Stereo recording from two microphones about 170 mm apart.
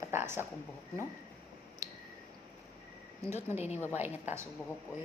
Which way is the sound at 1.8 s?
20° right (ahead or behind).